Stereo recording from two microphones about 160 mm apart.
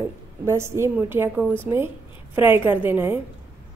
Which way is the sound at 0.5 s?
15° right (ahead or behind).